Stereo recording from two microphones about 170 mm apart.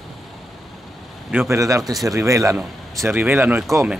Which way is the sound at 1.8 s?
Centre (ahead or behind).